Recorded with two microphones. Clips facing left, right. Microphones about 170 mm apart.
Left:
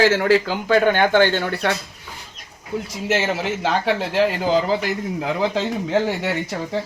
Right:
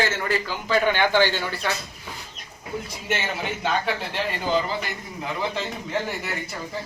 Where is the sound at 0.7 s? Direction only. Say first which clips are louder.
Left 5 dB; 50° left (ahead or behind).